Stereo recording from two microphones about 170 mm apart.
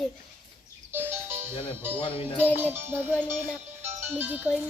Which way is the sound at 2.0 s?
30° left (ahead or behind).